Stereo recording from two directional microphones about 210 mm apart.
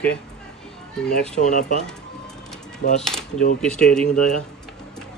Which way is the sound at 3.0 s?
Centre (ahead or behind).